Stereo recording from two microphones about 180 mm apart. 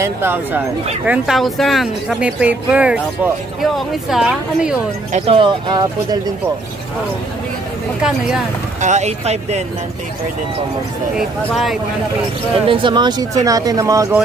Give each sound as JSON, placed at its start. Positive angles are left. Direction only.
{"t": 0.0, "sound": "speech", "side_deg": -10}
{"t": 5.1, "sound": "speech", "side_deg": -30}
{"t": 8.8, "sound": "speech", "side_deg": -40}
{"t": 11.1, "sound": "speech", "side_deg": 0}
{"t": 12.6, "sound": "speech", "side_deg": -30}